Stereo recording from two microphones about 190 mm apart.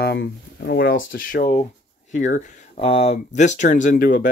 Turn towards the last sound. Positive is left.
turn(degrees=45)  # may be behind; listen again after turning